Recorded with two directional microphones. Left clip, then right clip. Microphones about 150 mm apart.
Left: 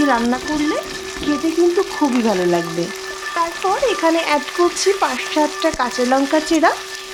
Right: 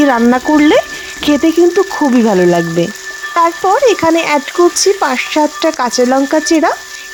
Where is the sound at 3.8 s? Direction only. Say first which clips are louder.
Right 6 dB; 50° right (ahead or behind).